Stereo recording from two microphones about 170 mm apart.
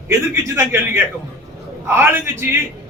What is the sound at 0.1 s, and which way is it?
A man's voice, 15° right (ahead or behind).